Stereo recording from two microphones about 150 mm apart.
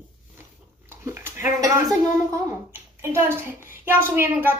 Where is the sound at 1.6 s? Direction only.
20° right (ahead or behind).